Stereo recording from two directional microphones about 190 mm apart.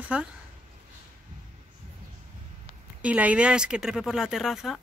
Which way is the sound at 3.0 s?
5° right (ahead or behind).